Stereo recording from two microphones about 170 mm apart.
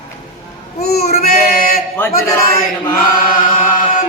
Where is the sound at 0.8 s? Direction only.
65° left (ahead or behind).